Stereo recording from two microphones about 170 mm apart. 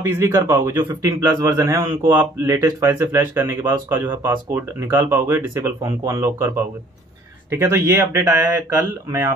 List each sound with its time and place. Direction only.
0.1 s a man's voice: 15° right (ahead or behind)